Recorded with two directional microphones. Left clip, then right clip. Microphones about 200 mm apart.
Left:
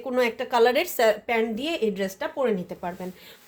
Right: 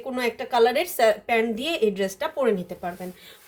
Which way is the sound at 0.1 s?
30° left (ahead or behind).